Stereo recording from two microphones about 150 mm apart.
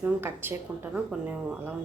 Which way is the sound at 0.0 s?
15° right (ahead or behind).